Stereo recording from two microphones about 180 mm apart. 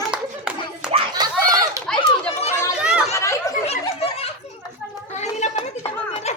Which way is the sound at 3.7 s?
35° left (ahead or behind).